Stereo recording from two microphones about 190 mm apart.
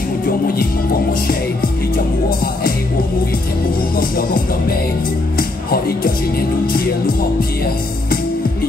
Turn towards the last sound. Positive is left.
turn(degrees=50)  # may be behind; listen again after turning